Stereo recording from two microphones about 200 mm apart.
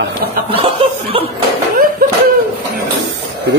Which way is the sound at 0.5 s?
30° right (ahead or behind).